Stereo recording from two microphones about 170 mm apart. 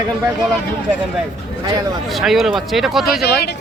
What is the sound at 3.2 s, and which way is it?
Speech, 70° left (ahead or behind).